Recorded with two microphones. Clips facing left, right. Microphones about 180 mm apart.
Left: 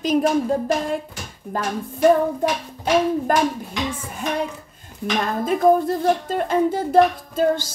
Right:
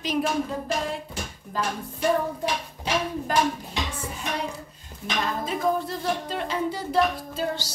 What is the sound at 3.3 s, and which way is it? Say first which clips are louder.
Speech: left 3 dB; 50° left (ahead or behind).